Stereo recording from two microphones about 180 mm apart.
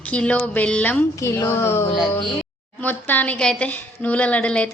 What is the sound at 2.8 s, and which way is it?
A woman's voice, 10° left (ahead or behind).